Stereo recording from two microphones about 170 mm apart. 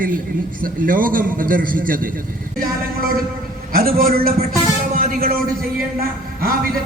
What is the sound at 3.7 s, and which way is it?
Speech, 60° right (ahead or behind).